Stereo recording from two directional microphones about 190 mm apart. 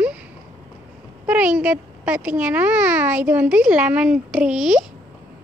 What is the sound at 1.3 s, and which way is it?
A child's voice, 5° right (ahead or behind).